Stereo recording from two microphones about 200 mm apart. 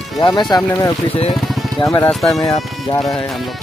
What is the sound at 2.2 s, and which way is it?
Speech, centre (ahead or behind).